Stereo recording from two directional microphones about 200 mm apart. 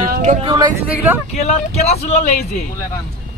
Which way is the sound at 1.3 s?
35° left (ahead or behind).